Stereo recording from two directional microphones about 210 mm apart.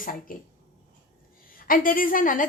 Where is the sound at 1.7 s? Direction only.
40° left (ahead or behind).